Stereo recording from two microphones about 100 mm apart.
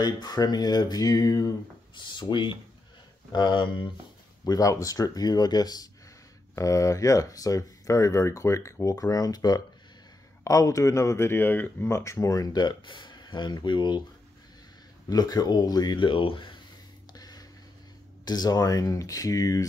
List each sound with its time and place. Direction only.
0.0 s speech: 40° left (ahead or behind)
2.0 s speech: 50° left (ahead or behind)
4.5 s speech: 35° left (ahead or behind); by 11.9 s 20° left (ahead or behind)
11.9 s speech: 30° left (ahead or behind)
12.5 s speech: 50° left (ahead or behind)
15.0 s speech: 40° left (ahead or behind); by 16.5 s 60° left (ahead or behind)
17.2 s a sound: 40° left (ahead or behind)
18.2 s speech: 40° left (ahead or behind)